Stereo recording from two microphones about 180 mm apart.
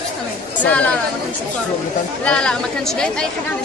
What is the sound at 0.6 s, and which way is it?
Speech, 10° left (ahead or behind).